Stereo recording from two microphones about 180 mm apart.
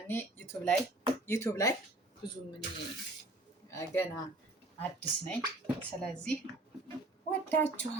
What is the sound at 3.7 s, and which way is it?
Speech, 15° left (ahead or behind).